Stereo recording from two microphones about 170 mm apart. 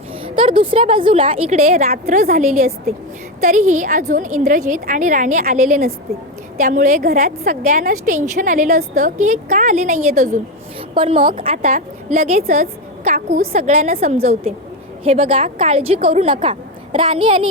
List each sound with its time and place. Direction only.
0.3 s a woman's voice: 30° right (ahead or behind)
1.9 s a woman's voice: 55° right (ahead or behind)
10.8 s a woman's voice: 35° right (ahead or behind)